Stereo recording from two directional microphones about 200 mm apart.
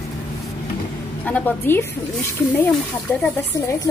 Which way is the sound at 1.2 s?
10° left (ahead or behind).